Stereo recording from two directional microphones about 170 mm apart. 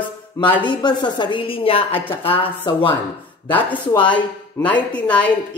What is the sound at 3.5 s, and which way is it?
A woman's voice, 10° left (ahead or behind).